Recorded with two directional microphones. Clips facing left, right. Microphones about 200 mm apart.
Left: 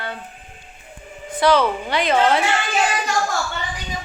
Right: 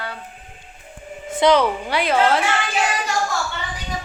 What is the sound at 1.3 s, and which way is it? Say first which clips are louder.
A woman's voice: right 1 dB; 20° right (ahead or behind).